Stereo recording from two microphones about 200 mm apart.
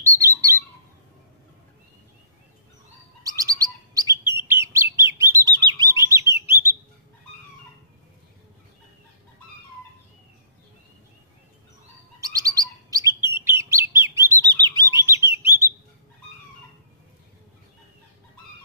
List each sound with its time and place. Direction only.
0.0 s bird: 15° right (ahead or behind)
3.3 s bird: 15° right (ahead or behind)
12.2 s chirp: 15° right (ahead or behind)
13.4 s bird: 15° right (ahead or behind)